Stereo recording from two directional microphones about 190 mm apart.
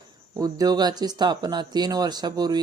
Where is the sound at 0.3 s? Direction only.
20° right (ahead or behind).